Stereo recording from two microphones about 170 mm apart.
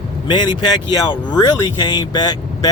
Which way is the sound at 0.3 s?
25° left (ahead or behind).